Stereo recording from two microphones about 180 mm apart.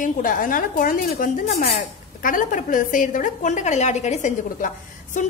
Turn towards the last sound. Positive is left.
turn(degrees=45)  # may be behind; listen again after turning